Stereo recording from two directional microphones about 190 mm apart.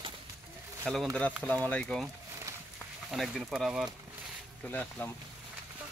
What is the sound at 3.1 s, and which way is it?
Speech, centre (ahead or behind).